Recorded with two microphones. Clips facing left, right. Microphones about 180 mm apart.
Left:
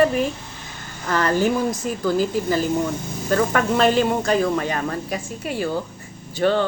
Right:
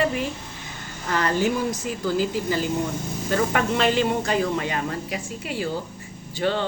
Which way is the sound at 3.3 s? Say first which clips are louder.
Left 3 dB; 45° left (ahead or behind).